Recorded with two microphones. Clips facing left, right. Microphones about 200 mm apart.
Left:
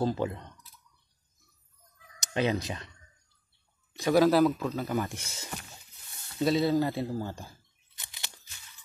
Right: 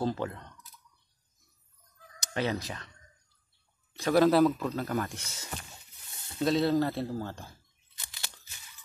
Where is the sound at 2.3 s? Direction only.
20° left (ahead or behind).